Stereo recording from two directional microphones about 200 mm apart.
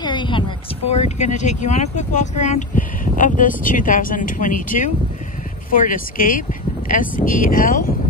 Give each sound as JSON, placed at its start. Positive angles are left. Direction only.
{"t": 0.0, "sound": "speech", "side_deg": 25}